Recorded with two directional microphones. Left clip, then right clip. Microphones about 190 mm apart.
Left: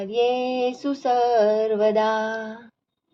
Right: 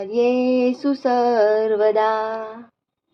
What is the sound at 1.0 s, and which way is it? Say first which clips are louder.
Child singing: right 1 dB; 20° right (ahead or behind).